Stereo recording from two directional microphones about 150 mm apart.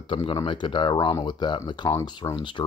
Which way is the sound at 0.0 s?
35° left (ahead or behind).